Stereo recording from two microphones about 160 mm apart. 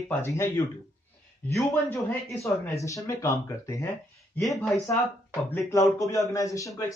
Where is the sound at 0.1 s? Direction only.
15° left (ahead or behind).